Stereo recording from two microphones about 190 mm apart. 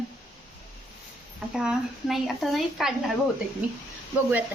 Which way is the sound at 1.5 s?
5° right (ahead or behind).